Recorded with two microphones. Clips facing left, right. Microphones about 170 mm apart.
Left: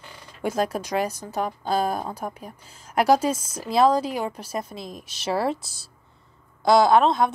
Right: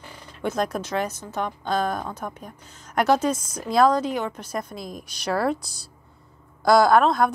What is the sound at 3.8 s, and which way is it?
Speech, 35° left (ahead or behind).